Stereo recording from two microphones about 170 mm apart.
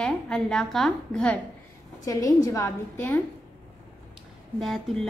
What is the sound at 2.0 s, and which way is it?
A woman's voice, 20° left (ahead or behind).